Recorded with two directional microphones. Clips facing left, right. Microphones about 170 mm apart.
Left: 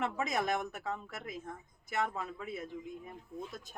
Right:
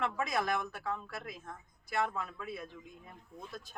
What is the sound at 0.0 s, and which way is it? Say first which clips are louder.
A man's voice: even; 20° left (ahead or behind).